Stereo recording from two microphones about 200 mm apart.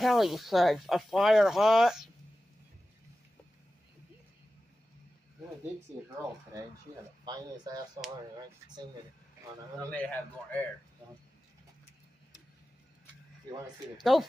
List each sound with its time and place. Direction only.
0.0 s speech: centre (ahead or behind)
7.2 s speech: 20° right (ahead or behind)
9.8 s a man's voice: 5° left (ahead or behind)
13.9 s speech: centre (ahead or behind)